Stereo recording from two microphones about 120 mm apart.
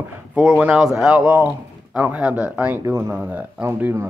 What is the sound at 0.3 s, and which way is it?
Speech, 10° right (ahead or behind).